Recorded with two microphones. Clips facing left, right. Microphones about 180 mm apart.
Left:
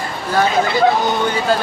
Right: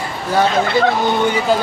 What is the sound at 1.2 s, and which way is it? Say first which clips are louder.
Speech: right 2 dB; 15° right (ahead or behind).